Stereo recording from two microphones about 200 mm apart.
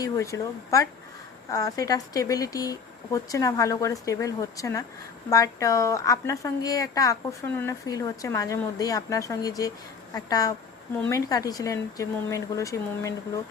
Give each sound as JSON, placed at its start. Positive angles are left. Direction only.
{"t": 0.0, "sound": "a woman's voice", "side_deg": 15}